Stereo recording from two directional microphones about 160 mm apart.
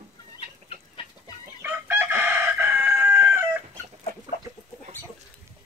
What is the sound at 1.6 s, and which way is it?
Chicken, 15° right (ahead or behind).